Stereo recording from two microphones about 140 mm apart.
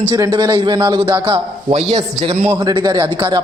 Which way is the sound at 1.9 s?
50° right (ahead or behind).